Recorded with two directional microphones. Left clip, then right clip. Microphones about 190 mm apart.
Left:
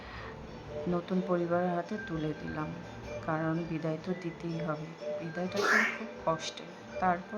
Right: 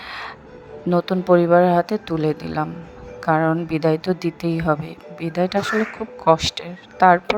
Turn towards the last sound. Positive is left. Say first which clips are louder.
# right 16 dB
turn(degrees=-50)  # may be behind; listen again after turning